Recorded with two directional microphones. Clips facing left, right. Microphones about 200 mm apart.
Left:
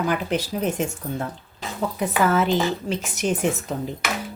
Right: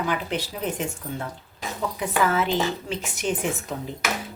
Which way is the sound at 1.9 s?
45° left (ahead or behind).